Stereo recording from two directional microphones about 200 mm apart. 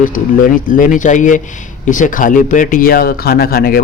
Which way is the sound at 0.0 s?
40° left (ahead or behind).